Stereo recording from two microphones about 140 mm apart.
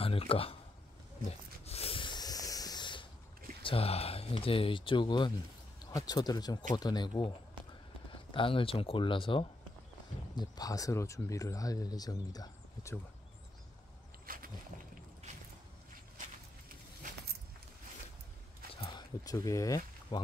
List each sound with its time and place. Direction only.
0.0 s speech: 45° left (ahead or behind)
1.7 s rub: 45° left (ahead or behind)
3.6 s speech: 45° left (ahead or behind); by 12.9 s 25° left (ahead or behind)
14.2 s a sound: 90° right
18.8 s speech: 35° left (ahead or behind)